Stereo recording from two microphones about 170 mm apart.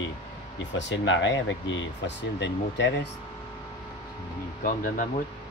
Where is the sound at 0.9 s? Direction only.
90° left.